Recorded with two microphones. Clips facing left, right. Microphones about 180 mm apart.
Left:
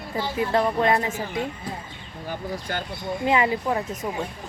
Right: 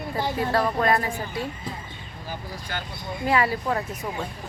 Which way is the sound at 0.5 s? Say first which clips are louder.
Left 2 dB; 20° left (ahead or behind).